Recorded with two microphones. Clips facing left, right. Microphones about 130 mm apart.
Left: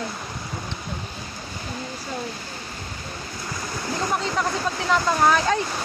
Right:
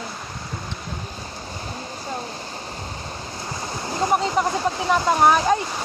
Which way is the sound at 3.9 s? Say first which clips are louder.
Right 5 dB; 20° right (ahead or behind).